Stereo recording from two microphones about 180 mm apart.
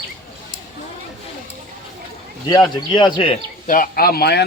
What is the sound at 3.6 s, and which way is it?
Speech, 50° left (ahead or behind).